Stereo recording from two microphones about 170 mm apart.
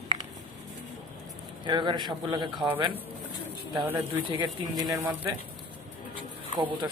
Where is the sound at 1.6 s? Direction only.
25° right (ahead or behind).